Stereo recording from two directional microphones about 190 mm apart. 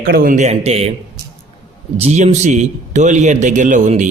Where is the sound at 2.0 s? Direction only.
35° right (ahead or behind).